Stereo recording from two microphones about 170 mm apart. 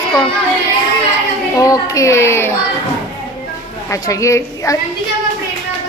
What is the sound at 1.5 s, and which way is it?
Speech, 20° left (ahead or behind).